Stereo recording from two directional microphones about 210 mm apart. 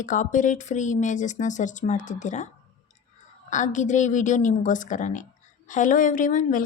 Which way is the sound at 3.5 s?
35° left (ahead or behind).